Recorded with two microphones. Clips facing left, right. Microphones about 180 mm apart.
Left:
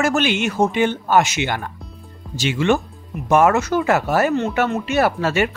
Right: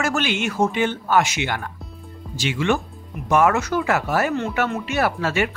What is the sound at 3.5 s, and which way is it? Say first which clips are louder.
Speech: left 3 dB; 25° left (ahead or behind).